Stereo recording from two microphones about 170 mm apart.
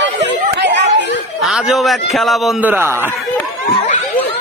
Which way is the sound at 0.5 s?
85° right.